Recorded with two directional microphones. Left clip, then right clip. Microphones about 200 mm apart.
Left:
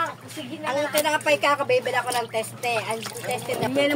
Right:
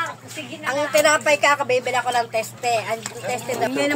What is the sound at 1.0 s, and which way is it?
A woman's voice, centre (ahead or behind).